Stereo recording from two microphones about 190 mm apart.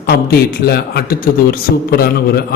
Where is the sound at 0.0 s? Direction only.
55° left (ahead or behind).